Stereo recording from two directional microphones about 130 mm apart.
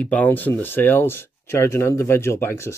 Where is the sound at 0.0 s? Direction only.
10° left (ahead or behind).